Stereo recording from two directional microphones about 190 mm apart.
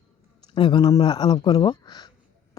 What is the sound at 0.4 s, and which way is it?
Speech, 25° left (ahead or behind).